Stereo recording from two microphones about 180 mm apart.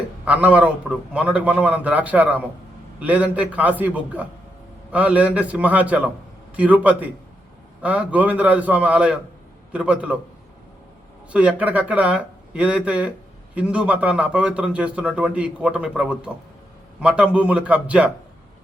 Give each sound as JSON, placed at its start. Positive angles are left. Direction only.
{"t": 0.3, "sound": "speech", "side_deg": -5}
{"t": 11.3, "sound": "speech", "side_deg": -5}